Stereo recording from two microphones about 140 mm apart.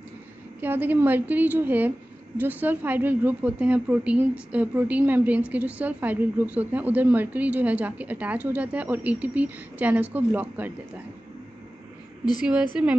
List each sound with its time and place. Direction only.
0.6 s a woman's voice: 15° right (ahead or behind)
12.8 s a woman's voice: 10° right (ahead or behind)